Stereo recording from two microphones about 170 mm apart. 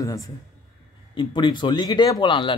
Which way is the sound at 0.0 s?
20° left (ahead or behind).